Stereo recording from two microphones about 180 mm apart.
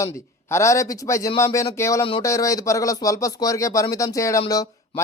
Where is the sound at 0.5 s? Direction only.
15° left (ahead or behind).